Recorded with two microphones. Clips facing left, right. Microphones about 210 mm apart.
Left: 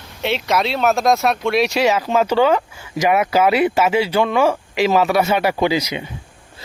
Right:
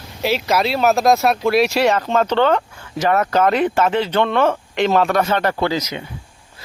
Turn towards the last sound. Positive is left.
turn(degrees=10)  # may be behind; listen again after turning